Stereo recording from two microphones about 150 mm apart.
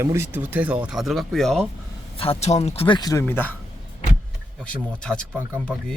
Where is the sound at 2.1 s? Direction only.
40° left (ahead or behind); by 3.5 s 15° left (ahead or behind).